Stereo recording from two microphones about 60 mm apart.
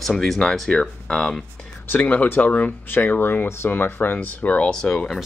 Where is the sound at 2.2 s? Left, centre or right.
Left; by 5.0 s centre.